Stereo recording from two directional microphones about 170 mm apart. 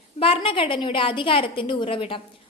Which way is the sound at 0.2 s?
30° left (ahead or behind).